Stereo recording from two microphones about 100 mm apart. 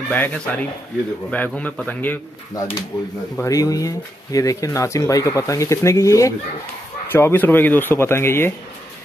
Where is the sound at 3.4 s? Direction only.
35° left (ahead or behind).